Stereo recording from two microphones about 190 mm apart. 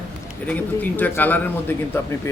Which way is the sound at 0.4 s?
10° left (ahead or behind).